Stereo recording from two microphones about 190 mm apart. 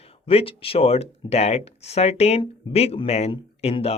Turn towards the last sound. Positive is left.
turn(degrees=30)  # may be behind; listen again after turning